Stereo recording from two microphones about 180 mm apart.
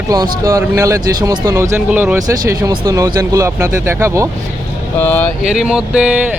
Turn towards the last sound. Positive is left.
turn(degrees=-5)  # may be behind; listen again after turning